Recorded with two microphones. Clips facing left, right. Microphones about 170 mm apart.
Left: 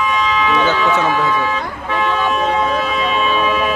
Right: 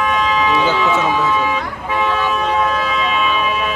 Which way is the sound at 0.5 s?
10° right (ahead or behind).